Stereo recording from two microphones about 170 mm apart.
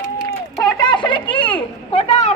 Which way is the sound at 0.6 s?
25° left (ahead or behind).